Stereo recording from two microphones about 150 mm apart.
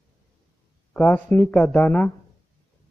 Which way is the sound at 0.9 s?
10° left (ahead or behind).